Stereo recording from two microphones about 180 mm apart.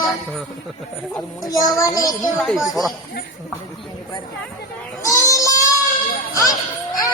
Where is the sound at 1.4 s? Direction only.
20° left (ahead or behind).